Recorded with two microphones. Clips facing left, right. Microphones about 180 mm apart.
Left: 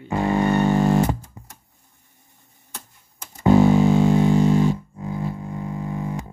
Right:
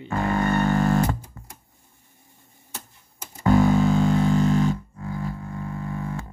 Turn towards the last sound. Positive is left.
turn(degrees=20)  # may be behind; listen again after turning